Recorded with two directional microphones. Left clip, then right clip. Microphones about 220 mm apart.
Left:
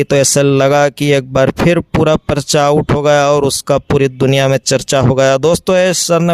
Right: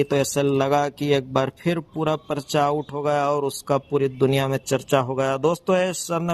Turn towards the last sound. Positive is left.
turn(degrees=40)  # may be behind; listen again after turning